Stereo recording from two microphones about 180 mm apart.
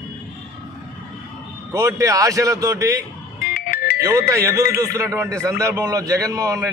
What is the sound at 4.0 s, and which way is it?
Speech, 15° right (ahead or behind).